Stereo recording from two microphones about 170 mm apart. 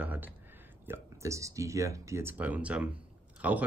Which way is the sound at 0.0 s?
10° right (ahead or behind).